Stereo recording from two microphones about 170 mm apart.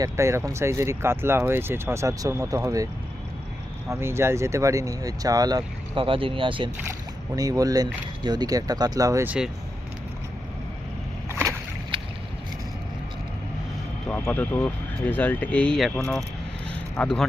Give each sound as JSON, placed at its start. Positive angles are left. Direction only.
{"t": 0.0, "sound": "speech", "side_deg": -15}
{"t": 7.3, "sound": "speech", "side_deg": -20}
{"t": 11.3, "sound": "a sound", "side_deg": -15}
{"t": 14.1, "sound": "speech", "side_deg": 10}